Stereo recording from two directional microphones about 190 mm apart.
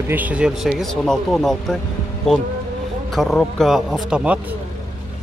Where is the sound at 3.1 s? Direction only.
Centre (ahead or behind).